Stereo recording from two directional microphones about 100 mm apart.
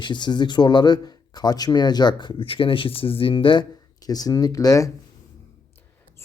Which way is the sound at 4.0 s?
40° left (ahead or behind).